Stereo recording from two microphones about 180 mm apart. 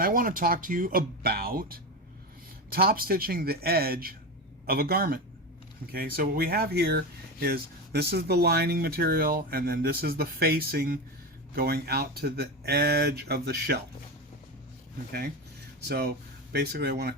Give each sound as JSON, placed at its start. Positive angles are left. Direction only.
{"t": 0.0, "sound": "speech", "side_deg": -50}
{"t": 16.5, "sound": "speech", "side_deg": -65}